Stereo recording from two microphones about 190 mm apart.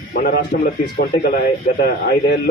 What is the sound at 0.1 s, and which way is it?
A man's voice, 50° left (ahead or behind).